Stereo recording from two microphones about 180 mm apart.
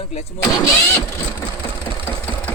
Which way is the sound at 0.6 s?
15° left (ahead or behind).